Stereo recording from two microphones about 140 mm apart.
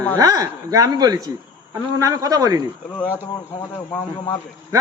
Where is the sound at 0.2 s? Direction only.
25° right (ahead or behind).